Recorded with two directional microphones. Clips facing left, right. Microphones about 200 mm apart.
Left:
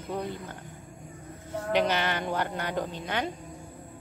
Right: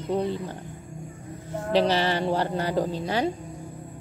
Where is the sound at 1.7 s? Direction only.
35° right (ahead or behind).